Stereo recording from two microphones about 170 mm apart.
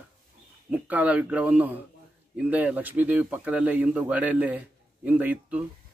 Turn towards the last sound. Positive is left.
turn(degrees=-10)  # may be behind; listen again after turning